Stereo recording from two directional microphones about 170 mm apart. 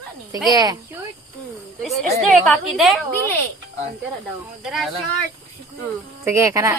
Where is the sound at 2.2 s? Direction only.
Centre (ahead or behind).